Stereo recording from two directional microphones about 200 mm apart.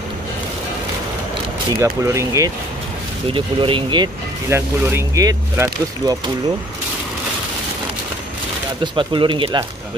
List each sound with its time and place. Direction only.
1.7 s speech: 15° right (ahead or behind)
3.3 s speech: 25° right (ahead or behind)
4.5 s speech: 10° right (ahead or behind)
8.8 s speech: 25° right (ahead or behind)